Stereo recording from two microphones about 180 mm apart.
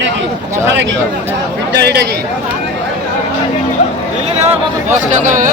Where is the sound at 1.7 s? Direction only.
65° right (ahead or behind).